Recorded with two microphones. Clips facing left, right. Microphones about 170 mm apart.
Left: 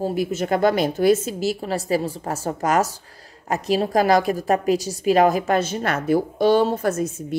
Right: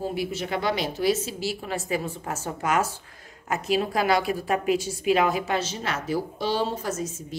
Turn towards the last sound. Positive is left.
turn(degrees=60)  # may be behind; listen again after turning